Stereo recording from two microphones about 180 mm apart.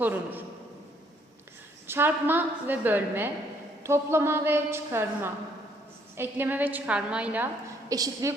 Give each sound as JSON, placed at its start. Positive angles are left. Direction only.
{"t": 0.0, "sound": "a woman's voice", "side_deg": -10}
{"t": 1.9, "sound": "a woman's voice", "side_deg": -10}